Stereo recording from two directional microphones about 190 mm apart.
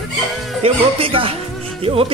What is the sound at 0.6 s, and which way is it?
Speech, 30° right (ahead or behind).